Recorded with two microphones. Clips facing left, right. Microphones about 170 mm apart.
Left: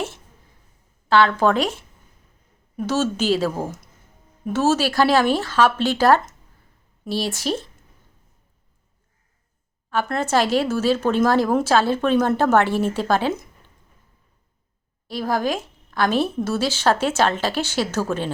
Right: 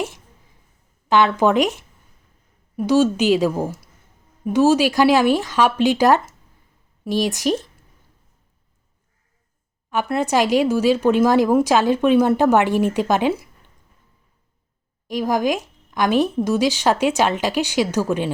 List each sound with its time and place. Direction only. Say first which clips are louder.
1.0 s speech: right 1 dB; 15° right (ahead or behind)
9.9 s speech: right 1 dB; 15° right (ahead or behind)
15.0 s speech: right 3 dB; 15° right (ahead or behind)